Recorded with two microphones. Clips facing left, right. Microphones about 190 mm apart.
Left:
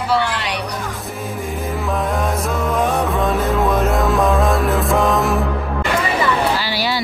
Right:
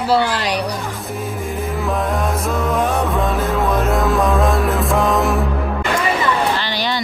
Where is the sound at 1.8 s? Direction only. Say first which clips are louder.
Even; centre (ahead or behind).